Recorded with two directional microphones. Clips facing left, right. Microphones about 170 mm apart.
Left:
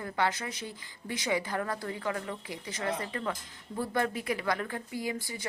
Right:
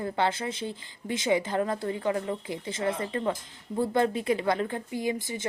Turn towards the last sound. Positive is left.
turn(degrees=-20)  # may be behind; listen again after turning